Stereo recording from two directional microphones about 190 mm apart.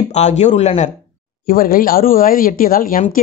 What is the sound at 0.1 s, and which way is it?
Speech, 35° left (ahead or behind).